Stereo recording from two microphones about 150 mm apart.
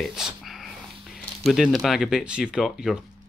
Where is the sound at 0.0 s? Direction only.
Centre (ahead or behind).